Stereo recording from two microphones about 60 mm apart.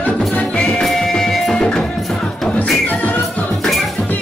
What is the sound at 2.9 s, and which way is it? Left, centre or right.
Music, left.